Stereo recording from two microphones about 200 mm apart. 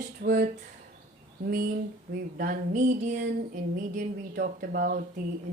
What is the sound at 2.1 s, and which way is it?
A woman's voice, 45° right (ahead or behind).